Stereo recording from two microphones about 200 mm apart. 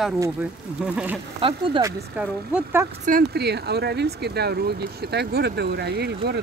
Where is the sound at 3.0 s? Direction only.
45° right (ahead or behind).